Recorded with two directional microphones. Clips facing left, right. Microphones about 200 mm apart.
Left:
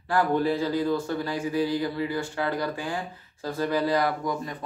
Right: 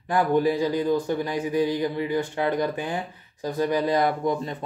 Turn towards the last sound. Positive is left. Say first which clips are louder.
# right 4 dB
turn(degrees=-25)  # may be behind; listen again after turning